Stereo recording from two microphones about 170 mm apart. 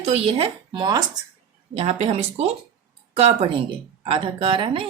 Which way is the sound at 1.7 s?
40° right (ahead or behind).